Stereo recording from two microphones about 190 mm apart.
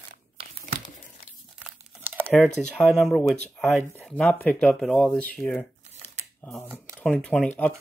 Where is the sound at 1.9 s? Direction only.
10° right (ahead or behind).